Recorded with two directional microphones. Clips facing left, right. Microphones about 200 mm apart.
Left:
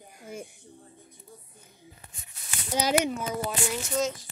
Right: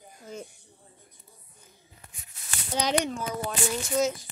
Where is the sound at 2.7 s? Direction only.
10° left (ahead or behind).